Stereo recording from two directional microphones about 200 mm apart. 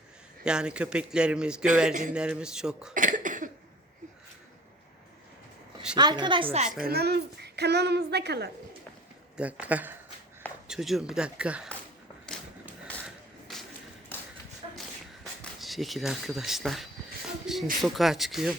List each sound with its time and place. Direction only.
0.4 s speech: 5° right (ahead or behind)
1.9 s a man's voice: 40° right (ahead or behind)
2.1 s speech: 5° right (ahead or behind)
2.9 s cough: 40° right (ahead or behind)
6.0 s a woman's voice: 20° right (ahead or behind)
6.8 s speech: 50° right (ahead or behind)
9.4 s speech: 5° right (ahead or behind)
12.3 s a sound: centre (ahead or behind)
14.8 s a sound: centre (ahead or behind)
17.7 s speech: centre (ahead or behind)